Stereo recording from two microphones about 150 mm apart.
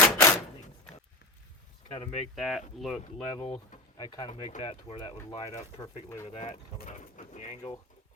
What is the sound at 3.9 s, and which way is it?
Speech, 30° left (ahead or behind).